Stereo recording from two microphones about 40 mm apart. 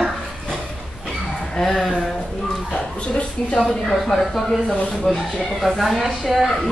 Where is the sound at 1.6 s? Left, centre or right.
Centre.